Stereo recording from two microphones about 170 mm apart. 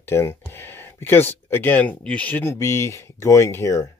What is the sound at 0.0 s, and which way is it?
Speech, 15° left (ahead or behind).